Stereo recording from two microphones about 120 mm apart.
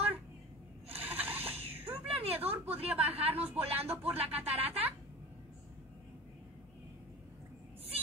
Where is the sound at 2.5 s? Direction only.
15° right (ahead or behind).